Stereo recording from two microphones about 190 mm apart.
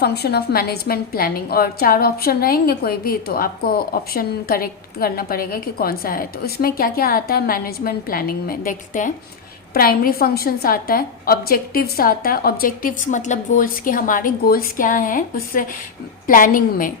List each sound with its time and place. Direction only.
0.0 s a woman's voice: 55° left (ahead or behind)